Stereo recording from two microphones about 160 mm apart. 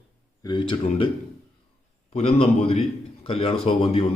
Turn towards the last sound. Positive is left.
turn(degrees=35)  # may be behind; listen again after turning